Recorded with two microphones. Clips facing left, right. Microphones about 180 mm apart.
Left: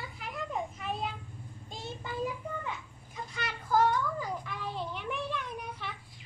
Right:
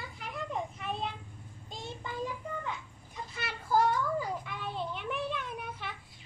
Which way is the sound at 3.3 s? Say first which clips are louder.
Even; 10° right (ahead or behind).